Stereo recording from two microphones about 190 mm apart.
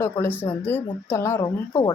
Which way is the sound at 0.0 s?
10° left (ahead or behind).